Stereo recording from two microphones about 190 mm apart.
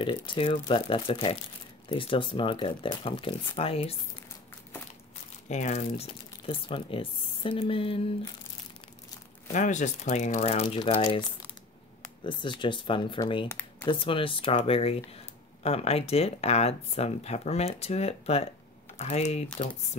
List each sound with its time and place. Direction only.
0.0 s speech: 25° left (ahead or behind)
5.5 s speech: 40° left (ahead or behind)
9.5 s speech: 40° left (ahead or behind)